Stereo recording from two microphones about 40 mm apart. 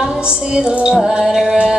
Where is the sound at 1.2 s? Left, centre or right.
Centre.